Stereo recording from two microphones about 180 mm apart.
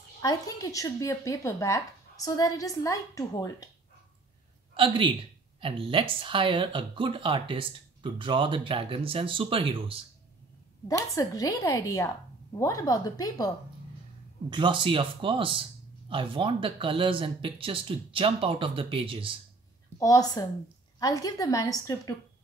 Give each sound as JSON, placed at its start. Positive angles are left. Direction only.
{"t": 0.2, "sound": "speech", "side_deg": 20}
{"t": 4.7, "sound": "speech", "side_deg": -30}
{"t": 11.1, "sound": "speech", "side_deg": 20}
{"t": 14.5, "sound": "speech", "side_deg": -25}
{"t": 20.0, "sound": "speech", "side_deg": 20}